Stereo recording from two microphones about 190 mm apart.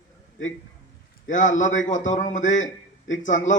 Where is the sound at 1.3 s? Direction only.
40° left (ahead or behind).